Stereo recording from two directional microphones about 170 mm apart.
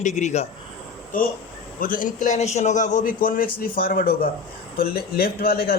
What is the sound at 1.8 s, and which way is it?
A man's voice, 55° left (ahead or behind).